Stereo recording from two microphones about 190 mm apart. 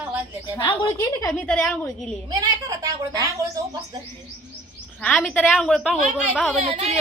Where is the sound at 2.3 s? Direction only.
20° right (ahead or behind).